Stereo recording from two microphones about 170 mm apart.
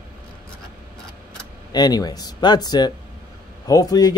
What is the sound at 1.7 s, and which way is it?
Speech, 25° left (ahead or behind).